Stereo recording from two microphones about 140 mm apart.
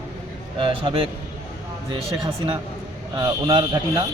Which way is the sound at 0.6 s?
40° right (ahead or behind).